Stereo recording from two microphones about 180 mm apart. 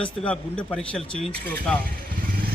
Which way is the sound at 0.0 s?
5° left (ahead or behind).